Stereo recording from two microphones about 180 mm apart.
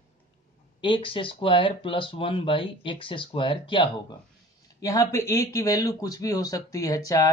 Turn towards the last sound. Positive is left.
turn(degrees=20)  # may be behind; listen again after turning